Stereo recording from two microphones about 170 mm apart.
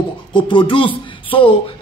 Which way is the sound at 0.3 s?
30° left (ahead or behind).